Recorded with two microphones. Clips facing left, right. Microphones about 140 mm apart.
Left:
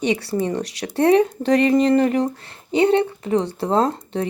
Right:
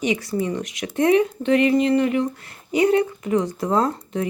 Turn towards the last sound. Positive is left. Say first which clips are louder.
# left 2 dB
turn(degrees=30)  # may be behind; listen again after turning